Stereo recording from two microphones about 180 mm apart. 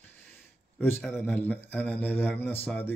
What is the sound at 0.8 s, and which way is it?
Speech, 10° left (ahead or behind).